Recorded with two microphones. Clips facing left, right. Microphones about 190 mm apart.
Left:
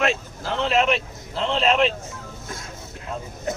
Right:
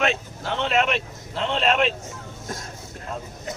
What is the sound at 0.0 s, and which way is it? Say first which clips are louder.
Vehicle: left 1 dB; centre (ahead or behind).